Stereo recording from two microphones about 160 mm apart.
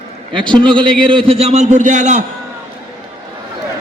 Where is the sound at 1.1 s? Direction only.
35° right (ahead or behind); by 2.2 s 50° right (ahead or behind).